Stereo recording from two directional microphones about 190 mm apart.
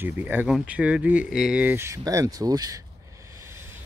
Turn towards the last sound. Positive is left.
turn(degrees=-15)  # may be behind; listen again after turning